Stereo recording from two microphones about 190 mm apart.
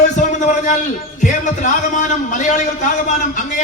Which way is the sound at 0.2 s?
40° left (ahead or behind).